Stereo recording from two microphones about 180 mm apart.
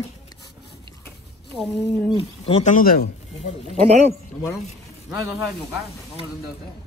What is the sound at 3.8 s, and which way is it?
Speech, 40° right (ahead or behind).